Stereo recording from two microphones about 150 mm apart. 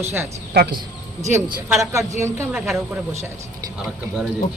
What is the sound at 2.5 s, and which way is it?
Speech, 5° right (ahead or behind).